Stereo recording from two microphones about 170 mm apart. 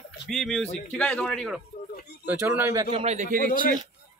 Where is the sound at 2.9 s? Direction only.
40° right (ahead or behind).